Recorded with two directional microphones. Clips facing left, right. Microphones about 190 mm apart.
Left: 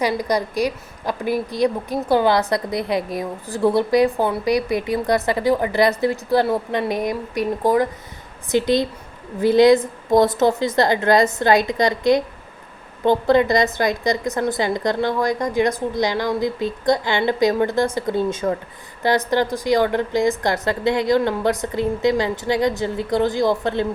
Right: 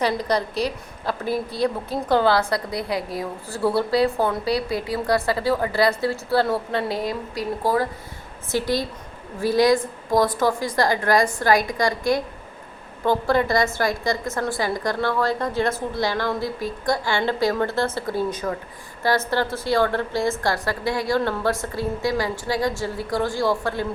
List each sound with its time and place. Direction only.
0.0 s a woman's voice: 10° left (ahead or behind)